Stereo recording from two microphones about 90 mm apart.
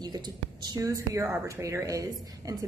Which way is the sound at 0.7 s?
35° right (ahead or behind).